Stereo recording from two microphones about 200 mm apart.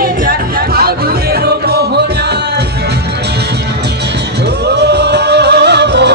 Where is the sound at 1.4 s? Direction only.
55° right (ahead or behind).